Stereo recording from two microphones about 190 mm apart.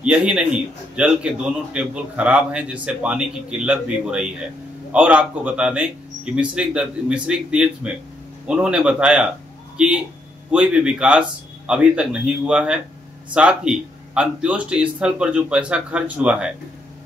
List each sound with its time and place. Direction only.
0.0 s a man's voice: 5° right (ahead or behind)